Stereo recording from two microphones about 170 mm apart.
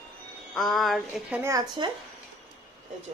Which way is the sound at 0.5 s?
Centre (ahead or behind).